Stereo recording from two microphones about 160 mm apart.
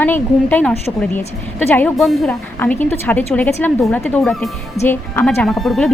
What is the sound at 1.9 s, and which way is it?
Speech, centre (ahead or behind).